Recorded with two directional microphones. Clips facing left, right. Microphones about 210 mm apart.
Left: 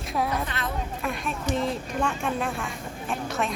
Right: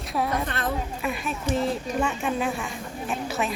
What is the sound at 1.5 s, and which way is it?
Speech, centre (ahead or behind).